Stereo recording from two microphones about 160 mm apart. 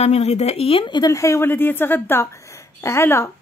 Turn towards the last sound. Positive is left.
turn(degrees=15)  # may be behind; listen again after turning